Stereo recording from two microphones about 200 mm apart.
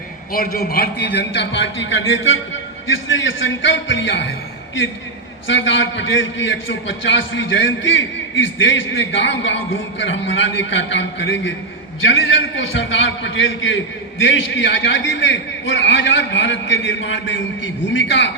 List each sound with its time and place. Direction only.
0.3 s a man's voice: 45° left (ahead or behind); by 18.3 s 70° left (ahead or behind)